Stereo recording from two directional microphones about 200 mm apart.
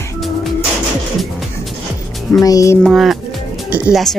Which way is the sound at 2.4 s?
15° left (ahead or behind).